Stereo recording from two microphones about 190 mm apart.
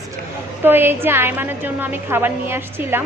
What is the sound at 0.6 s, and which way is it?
A woman's voice, 10° right (ahead or behind).